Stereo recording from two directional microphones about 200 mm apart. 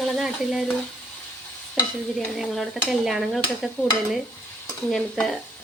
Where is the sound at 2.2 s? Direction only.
Centre (ahead or behind).